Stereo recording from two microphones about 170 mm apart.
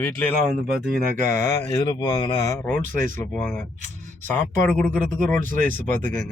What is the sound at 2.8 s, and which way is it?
Speech, 50° right (ahead or behind).